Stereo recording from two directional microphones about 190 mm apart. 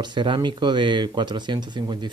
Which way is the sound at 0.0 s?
25° right (ahead or behind).